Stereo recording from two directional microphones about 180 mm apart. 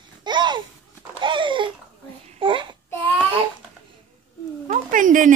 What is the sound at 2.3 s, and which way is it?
Babbling, 25° right (ahead or behind).